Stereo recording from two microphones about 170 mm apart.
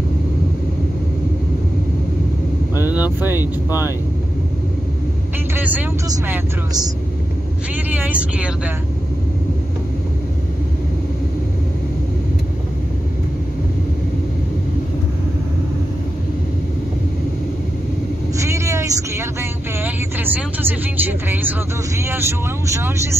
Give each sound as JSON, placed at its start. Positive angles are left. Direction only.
{"t": 2.8, "sound": "speech", "side_deg": -10}
{"t": 5.5, "sound": "speech", "side_deg": -10}
{"t": 7.7, "sound": "speech", "side_deg": -10}
{"t": 18.4, "sound": "vehicle", "side_deg": -15}
{"t": 19.8, "sound": "speech", "side_deg": -10}